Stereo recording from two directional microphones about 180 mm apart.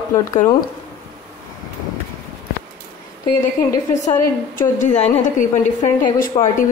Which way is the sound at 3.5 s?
45° left (ahead or behind).